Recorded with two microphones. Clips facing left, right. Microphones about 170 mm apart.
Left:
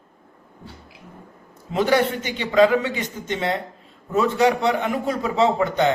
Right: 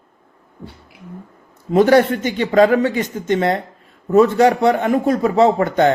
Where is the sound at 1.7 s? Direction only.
50° right (ahead or behind).